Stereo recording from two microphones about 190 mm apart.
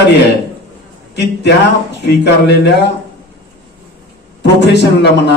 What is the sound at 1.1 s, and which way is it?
A man's voice, 65° left (ahead or behind).